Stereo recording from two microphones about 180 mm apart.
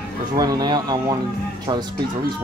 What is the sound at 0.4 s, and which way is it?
Speech, 20° right (ahead or behind).